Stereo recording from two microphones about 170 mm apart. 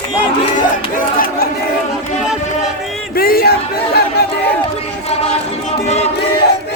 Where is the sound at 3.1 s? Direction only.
60° left (ahead or behind).